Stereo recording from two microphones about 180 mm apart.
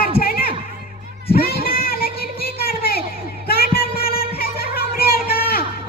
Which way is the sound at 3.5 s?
60° left (ahead or behind).